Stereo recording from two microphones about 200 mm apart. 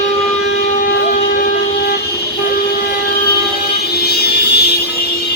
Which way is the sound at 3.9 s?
50° left (ahead or behind).